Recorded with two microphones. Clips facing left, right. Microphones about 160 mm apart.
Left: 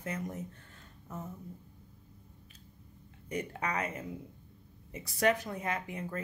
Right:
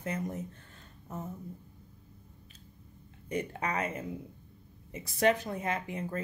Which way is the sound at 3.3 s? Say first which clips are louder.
Right 2 dB; 25° right (ahead or behind).